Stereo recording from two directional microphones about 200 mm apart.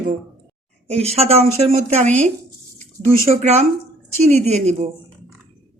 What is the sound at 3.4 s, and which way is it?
A woman's voice, 35° right (ahead or behind).